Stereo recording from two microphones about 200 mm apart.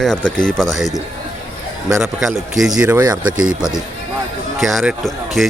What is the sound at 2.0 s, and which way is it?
Speech, centre (ahead or behind).